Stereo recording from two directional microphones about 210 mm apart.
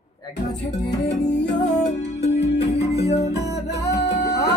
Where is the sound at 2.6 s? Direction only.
30° left (ahead or behind).